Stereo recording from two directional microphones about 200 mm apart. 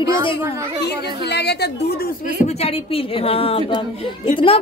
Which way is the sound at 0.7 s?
55° left (ahead or behind).